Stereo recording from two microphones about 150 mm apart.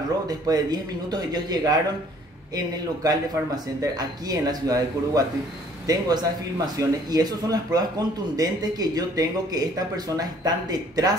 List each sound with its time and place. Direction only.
0.3 s speech: 25° right (ahead or behind)